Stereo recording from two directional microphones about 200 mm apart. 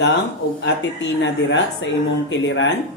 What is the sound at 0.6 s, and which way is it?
Speech, 65° left (ahead or behind).